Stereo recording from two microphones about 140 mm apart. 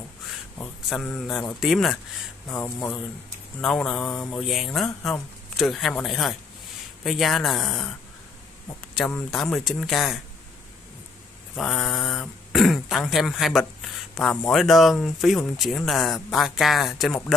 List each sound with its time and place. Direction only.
1.2 s speech: centre (ahead or behind)
2.5 s speech: 15° left (ahead or behind)
3.6 s speech: 5° left (ahead or behind)
8.9 s speech: centre (ahead or behind)
11.5 s speech: centre (ahead or behind)
14.6 s speech: centre (ahead or behind)